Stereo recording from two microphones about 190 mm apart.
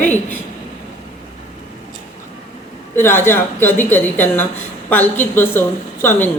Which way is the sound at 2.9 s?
10° left (ahead or behind).